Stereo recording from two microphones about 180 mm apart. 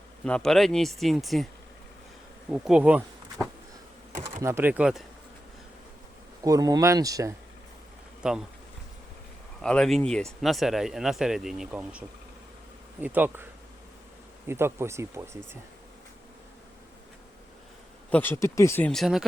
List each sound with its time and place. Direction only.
0.3 s speech: 5° left (ahead or behind)
2.5 s bee: 5° right (ahead or behind)
4.4 s speech: 15° right (ahead or behind)
6.4 s speech: 20° right (ahead or behind)
8.2 s speech: 5° right (ahead or behind)
9.6 s speech: 5° left (ahead or behind); by 15.4 s 15° right (ahead or behind)
18.1 s speech: 10° left (ahead or behind)